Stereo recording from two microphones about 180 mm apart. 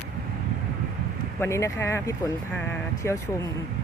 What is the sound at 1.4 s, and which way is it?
Speech, 15° left (ahead or behind).